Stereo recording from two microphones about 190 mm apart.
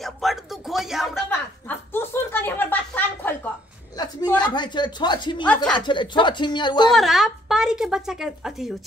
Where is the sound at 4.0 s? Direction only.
20° left (ahead or behind).